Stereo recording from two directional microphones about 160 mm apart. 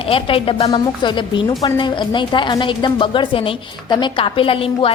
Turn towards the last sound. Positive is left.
turn(degrees=35)  # may be behind; listen again after turning